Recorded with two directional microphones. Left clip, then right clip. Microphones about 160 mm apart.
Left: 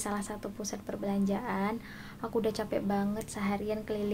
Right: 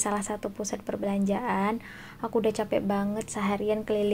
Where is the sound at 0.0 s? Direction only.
15° right (ahead or behind).